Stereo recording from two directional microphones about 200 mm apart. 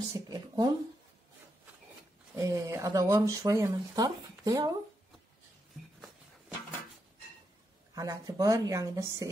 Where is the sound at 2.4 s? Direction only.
15° right (ahead or behind).